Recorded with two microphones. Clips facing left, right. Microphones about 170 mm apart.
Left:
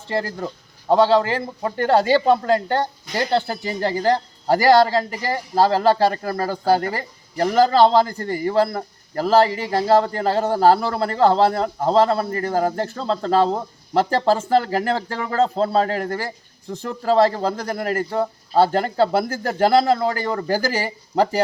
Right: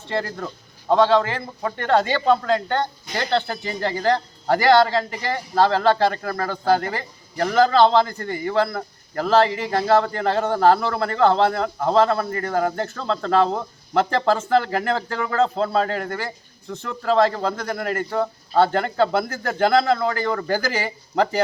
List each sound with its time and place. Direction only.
0.1 s speech: 35° left (ahead or behind)
1.9 s speech: 10° left (ahead or behind)
2.4 s speech: 35° left (ahead or behind)
3.2 s speech: 10° left (ahead or behind)
3.6 s speech: 40° left (ahead or behind)